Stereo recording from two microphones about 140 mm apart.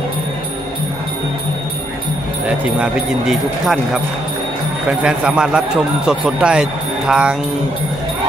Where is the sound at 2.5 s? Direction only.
5° right (ahead or behind).